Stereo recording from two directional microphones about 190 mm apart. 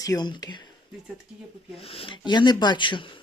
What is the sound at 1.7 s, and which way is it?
Speech, 30° left (ahead or behind).